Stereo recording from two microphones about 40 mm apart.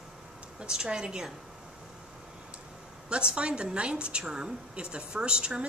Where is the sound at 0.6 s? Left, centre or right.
Centre.